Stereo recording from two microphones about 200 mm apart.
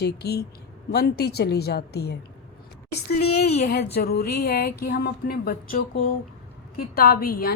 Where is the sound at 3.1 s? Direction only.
55° left (ahead or behind).